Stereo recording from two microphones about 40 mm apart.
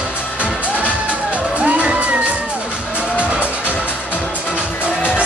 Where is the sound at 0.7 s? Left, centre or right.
Right.